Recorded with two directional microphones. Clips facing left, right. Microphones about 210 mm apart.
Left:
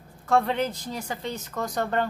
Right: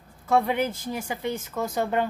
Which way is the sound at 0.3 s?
10° right (ahead or behind).